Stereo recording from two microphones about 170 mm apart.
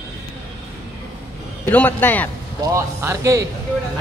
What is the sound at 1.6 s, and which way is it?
Speech, 10° left (ahead or behind).